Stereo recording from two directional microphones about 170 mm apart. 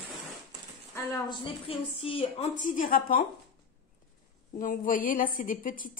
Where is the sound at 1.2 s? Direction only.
30° left (ahead or behind); by 3.2 s 55° left (ahead or behind).